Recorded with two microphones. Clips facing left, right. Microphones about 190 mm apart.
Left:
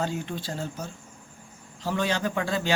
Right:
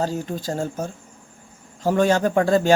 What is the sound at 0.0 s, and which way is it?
Speech, 40° right (ahead or behind).